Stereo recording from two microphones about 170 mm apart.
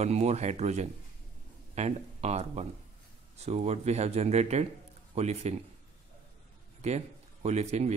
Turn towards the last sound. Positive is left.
turn(degrees=-40)  # may be behind; listen again after turning